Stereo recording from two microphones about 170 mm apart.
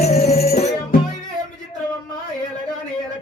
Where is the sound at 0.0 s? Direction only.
40° left (ahead or behind).